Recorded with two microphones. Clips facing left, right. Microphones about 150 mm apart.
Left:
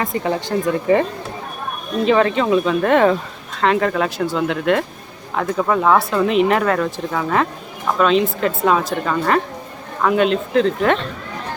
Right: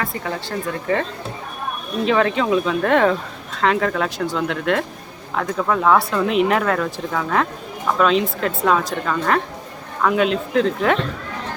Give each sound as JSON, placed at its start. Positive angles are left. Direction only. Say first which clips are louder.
{"t": 0.0, "sound": "speech", "louder": "left 5 dB", "side_deg": 20}
{"t": 2.0, "sound": "speech", "louder": "left 2 dB", "side_deg": 0}